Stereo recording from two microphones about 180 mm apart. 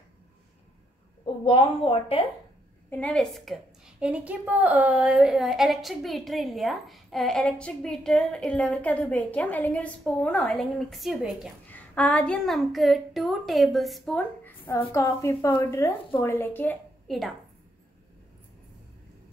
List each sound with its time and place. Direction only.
1.4 s speech: 30° left (ahead or behind)
2.9 s a woman's voice: 10° left (ahead or behind)